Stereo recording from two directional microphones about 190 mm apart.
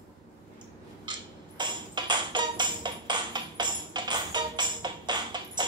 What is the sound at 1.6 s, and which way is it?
Music, 25° right (ahead or behind).